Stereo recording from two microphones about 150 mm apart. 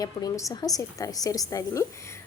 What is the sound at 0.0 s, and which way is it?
A woman's voice, 25° left (ahead or behind).